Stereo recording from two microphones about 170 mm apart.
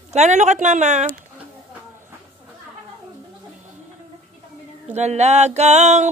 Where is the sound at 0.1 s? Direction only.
45° right (ahead or behind).